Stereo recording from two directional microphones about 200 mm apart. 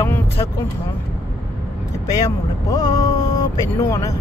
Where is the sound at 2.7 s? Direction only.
15° left (ahead or behind).